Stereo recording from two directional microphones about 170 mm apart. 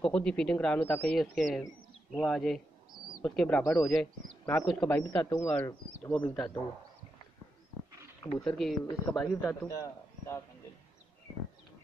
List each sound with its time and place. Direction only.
0.0 s speech: 5° left (ahead or behind)
8.5 s speech: centre (ahead or behind)
8.8 s speech: 20° left (ahead or behind)
9.2 s speech: 10° left (ahead or behind)